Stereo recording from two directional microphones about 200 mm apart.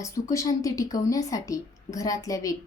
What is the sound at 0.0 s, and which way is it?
Speech, 15° left (ahead or behind).